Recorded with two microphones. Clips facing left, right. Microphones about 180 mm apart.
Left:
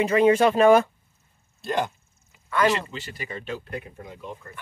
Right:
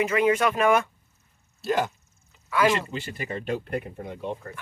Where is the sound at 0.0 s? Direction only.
30° left (ahead or behind).